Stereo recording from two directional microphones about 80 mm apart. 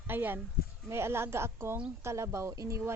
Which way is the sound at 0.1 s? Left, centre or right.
Right.